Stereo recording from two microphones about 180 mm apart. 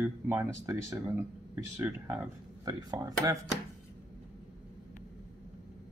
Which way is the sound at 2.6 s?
20° right (ahead or behind).